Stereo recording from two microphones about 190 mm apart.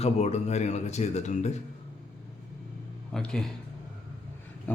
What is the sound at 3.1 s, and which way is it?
Speech, 5° left (ahead or behind).